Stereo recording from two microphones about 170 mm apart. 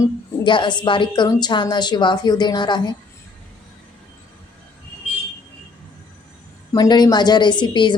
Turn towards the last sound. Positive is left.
turn(degrees=25)  # may be behind; listen again after turning